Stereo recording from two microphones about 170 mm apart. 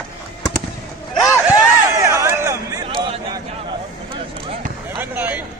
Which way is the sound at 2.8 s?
30° right (ahead or behind).